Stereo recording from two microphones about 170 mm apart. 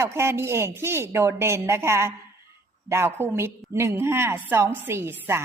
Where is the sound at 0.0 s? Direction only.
15° right (ahead or behind).